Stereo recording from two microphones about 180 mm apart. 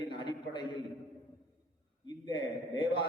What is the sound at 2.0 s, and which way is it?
A man's voice, 25° left (ahead or behind).